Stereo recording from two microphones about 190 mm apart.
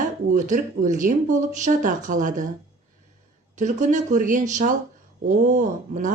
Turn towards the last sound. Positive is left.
turn(degrees=-40)  # may be behind; listen again after turning